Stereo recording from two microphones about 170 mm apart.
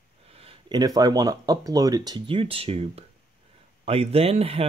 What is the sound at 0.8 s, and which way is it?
Speech, 25° right (ahead or behind).